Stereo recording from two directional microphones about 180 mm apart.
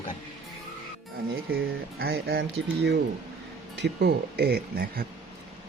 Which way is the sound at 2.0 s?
60° right (ahead or behind).